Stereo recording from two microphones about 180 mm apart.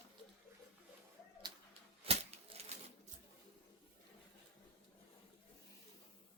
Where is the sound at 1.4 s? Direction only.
30° right (ahead or behind).